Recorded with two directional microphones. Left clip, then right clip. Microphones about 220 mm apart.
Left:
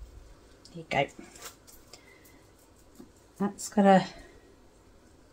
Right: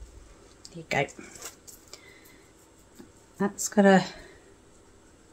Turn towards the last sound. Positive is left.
turn(degrees=-20)  # may be behind; listen again after turning